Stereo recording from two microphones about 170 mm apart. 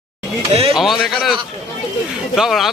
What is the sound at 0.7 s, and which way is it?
Speech, centre (ahead or behind).